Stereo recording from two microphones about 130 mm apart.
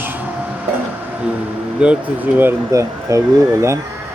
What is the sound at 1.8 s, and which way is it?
Speech, 10° right (ahead or behind).